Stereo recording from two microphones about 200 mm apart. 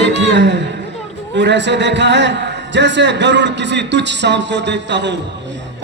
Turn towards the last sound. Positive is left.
turn(degrees=-60)  # may be behind; listen again after turning